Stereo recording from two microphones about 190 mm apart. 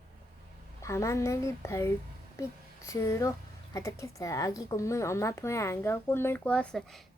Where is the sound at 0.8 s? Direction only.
15° left (ahead or behind).